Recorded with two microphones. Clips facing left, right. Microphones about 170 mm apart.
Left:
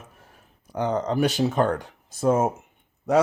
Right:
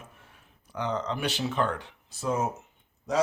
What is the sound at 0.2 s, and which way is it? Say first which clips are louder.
Speech: left 4 dB; 40° left (ahead or behind).